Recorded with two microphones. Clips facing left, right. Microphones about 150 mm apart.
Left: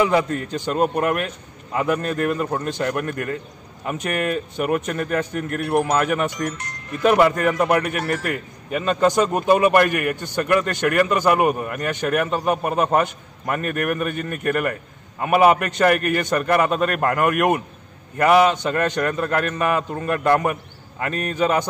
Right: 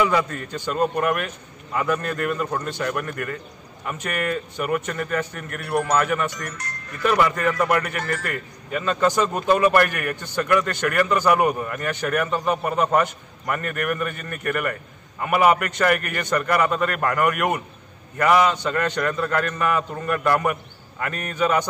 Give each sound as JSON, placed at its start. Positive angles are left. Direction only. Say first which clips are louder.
{"t": 0.0, "sound": "a man's voice", "louder": "left 3 dB", "side_deg": 25}